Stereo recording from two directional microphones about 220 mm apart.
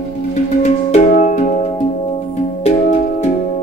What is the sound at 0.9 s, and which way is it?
Music, 35° left (ahead or behind).